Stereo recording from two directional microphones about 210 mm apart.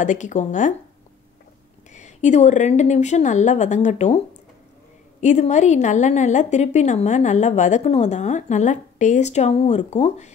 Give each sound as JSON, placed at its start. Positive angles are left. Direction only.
{"t": 0.0, "sound": "a woman's voice", "side_deg": 35}
{"t": 1.9, "sound": "a woman's voice", "side_deg": 35}
{"t": 5.2, "sound": "a woman's voice", "side_deg": 35}